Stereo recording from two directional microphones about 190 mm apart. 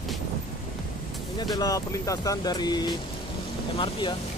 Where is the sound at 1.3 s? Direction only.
20° left (ahead or behind).